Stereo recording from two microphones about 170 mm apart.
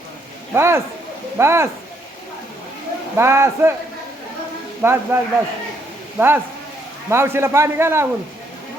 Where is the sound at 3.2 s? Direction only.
15° right (ahead or behind).